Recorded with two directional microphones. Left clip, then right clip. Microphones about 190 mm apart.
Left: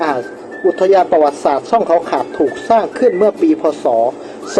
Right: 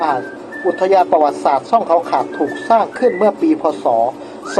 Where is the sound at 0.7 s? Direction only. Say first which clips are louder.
Left 1 dB; 30° left (ahead or behind).